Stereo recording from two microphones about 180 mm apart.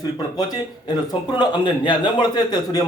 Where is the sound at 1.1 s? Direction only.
25° left (ahead or behind).